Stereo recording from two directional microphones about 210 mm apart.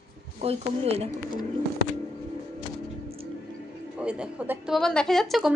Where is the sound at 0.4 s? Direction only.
30° right (ahead or behind).